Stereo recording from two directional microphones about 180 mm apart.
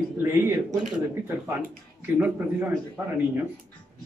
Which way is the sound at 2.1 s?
10° right (ahead or behind).